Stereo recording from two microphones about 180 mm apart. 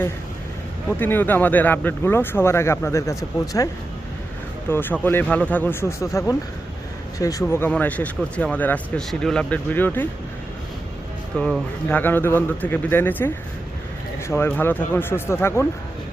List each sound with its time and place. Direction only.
0.9 s speech: 10° left (ahead or behind)
4.7 s speech: 10° left (ahead or behind)
11.3 s speech: 5° left (ahead or behind)